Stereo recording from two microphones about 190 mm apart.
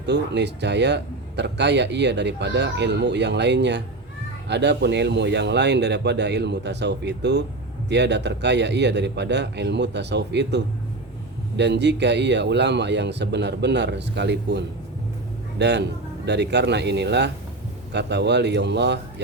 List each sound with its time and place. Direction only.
0.0 s a man's voice: 65° right (ahead or behind)